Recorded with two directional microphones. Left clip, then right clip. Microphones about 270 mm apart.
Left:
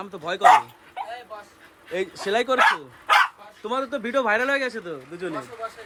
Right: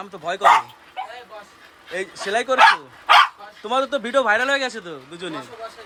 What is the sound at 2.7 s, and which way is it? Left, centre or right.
Speech, centre.